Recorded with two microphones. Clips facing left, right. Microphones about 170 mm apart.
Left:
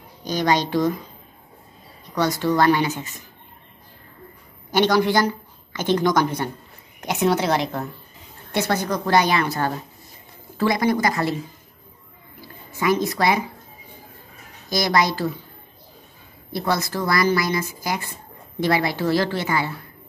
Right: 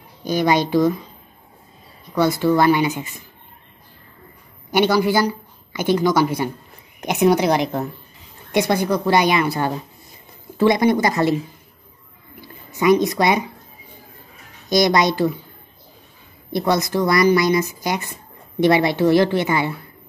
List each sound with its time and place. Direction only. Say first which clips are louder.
0.2 s a woman's voice: right 3 dB; 10° right (ahead or behind)
2.1 s a woman's voice: right 3 dB; 10° right (ahead or behind)
4.6 s a woman's voice: right 1 dB; 10° right (ahead or behind)
12.7 s a woman's voice: right 5 dB; 20° right (ahead or behind)
14.7 s speech: right 4 dB; 20° right (ahead or behind)
16.5 s speech: right 5 dB; 20° right (ahead or behind)